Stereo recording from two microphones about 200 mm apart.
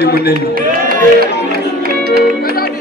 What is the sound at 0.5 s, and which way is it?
Speech, 45° right (ahead or behind).